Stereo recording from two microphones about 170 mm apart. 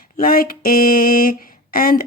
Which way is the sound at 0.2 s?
60° left (ahead or behind).